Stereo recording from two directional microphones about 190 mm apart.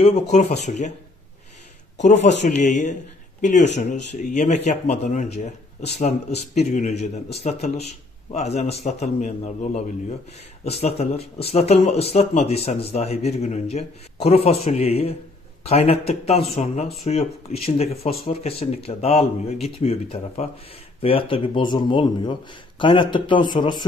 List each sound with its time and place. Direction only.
0.0 s speech: 35° left (ahead or behind)
2.0 s speech: 40° left (ahead or behind); by 23.9 s 25° left (ahead or behind)